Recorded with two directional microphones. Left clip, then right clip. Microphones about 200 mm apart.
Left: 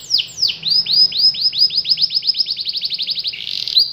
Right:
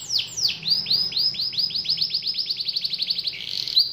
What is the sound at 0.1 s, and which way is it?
Chirp, 20° left (ahead or behind).